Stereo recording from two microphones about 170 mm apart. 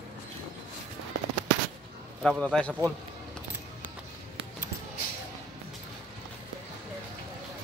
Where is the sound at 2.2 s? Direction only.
5° left (ahead or behind).